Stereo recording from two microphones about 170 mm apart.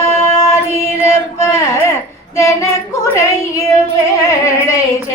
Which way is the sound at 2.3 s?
20° left (ahead or behind).